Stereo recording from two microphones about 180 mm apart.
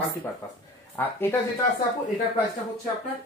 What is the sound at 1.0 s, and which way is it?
Speech, 10° left (ahead or behind).